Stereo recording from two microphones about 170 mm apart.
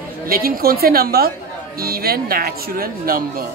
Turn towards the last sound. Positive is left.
turn(degrees=-60)  # may be behind; listen again after turning